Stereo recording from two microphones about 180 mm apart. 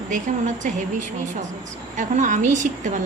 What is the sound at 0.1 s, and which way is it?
Speech, 45° right (ahead or behind).